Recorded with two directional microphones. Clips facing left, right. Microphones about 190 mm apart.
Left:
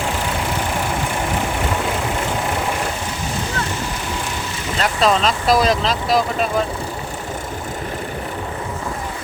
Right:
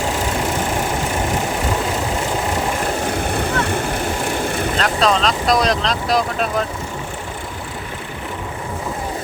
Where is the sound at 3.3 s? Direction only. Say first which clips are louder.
Right 4 dB; 60° right (ahead or behind).